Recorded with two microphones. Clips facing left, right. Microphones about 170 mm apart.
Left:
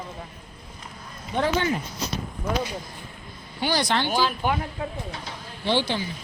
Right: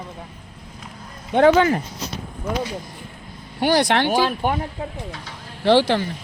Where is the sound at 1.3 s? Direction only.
70° right (ahead or behind).